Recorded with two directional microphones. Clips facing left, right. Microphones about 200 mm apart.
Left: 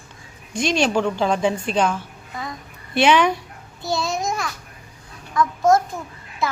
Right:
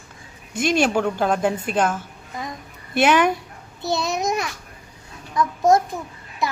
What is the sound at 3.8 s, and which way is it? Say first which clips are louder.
A child's voice: right 1 dB; 20° right (ahead or behind).